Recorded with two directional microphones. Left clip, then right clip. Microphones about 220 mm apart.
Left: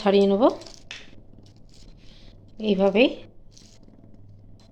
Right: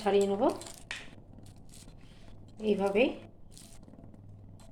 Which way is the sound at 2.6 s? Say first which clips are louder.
Left 8 dB; 45° left (ahead or behind).